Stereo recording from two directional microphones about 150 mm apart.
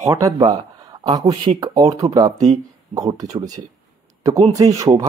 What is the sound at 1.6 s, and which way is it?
A man's voice, 25° right (ahead or behind).